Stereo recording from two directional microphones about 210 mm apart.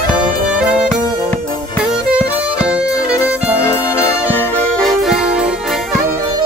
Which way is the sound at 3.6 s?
15° left (ahead or behind).